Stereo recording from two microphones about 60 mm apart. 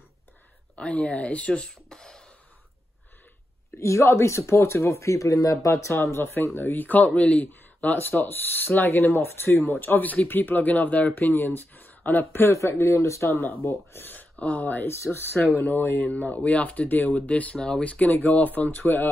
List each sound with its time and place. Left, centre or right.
0.7 s speech: left
3.8 s speech: left
5.9 s speech: left
12.5 s speech: left
14.0 s speech: left